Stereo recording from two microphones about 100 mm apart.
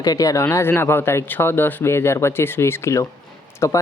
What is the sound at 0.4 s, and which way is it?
Speech, 25° left (ahead or behind).